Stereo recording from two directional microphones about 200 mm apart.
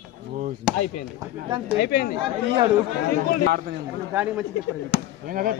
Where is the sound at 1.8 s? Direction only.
50° left (ahead or behind).